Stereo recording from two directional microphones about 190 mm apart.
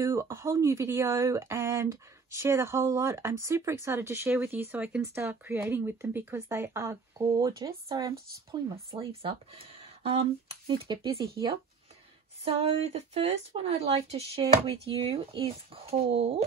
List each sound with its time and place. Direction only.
0.0 s speech: 15° right (ahead or behind)
12.4 s speech: 30° right (ahead or behind)